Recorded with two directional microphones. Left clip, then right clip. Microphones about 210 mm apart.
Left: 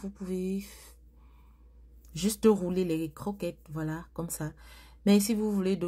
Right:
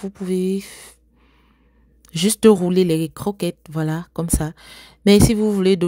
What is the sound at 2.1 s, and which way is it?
Speech, 40° right (ahead or behind).